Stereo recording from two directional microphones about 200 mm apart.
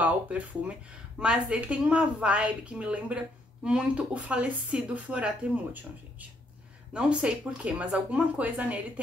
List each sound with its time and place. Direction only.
0.0 s a woman's voice: 5° right (ahead or behind)
6.9 s speech: 5° right (ahead or behind)